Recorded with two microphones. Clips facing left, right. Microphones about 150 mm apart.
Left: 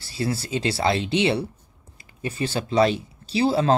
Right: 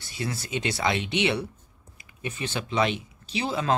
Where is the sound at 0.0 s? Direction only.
30° left (ahead or behind).